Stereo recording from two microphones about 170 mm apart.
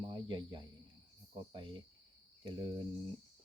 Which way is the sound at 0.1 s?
25° right (ahead or behind).